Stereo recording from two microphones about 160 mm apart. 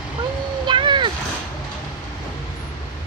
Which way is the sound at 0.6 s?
30° right (ahead or behind).